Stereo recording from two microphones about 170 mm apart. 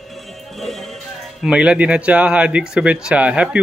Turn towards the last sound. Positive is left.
turn(degrees=-5)  # may be behind; listen again after turning